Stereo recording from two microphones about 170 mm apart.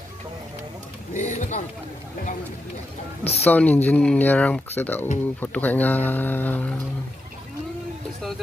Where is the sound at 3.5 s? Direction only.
10° left (ahead or behind).